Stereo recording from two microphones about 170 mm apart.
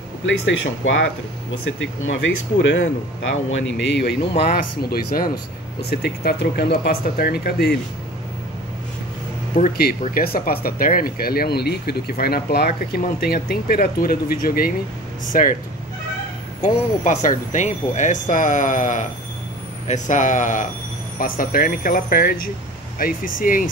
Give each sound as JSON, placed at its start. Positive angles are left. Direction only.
{"t": 0.2, "sound": "speech", "side_deg": 90}
{"t": 3.6, "sound": "speech", "side_deg": 90}
{"t": 4.4, "sound": "speech", "side_deg": 65}
{"t": 5.8, "sound": "speech", "side_deg": 70}
{"t": 9.6, "sound": "speech", "side_deg": 65}
{"t": 16.6, "sound": "speech", "side_deg": 45}